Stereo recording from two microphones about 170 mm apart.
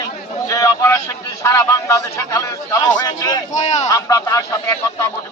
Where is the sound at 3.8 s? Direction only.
20° left (ahead or behind).